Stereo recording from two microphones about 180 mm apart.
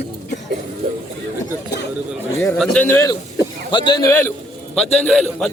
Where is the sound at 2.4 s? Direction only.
10° left (ahead or behind).